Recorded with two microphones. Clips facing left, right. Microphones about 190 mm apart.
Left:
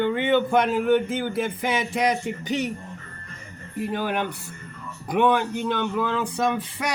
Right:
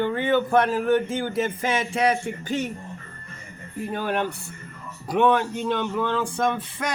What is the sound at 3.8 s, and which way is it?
Speech, 10° left (ahead or behind).